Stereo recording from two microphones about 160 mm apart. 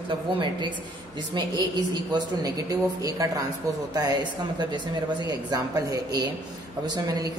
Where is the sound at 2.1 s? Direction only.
25° right (ahead or behind).